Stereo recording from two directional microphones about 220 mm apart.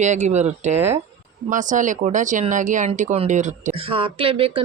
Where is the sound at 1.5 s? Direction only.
35° right (ahead or behind).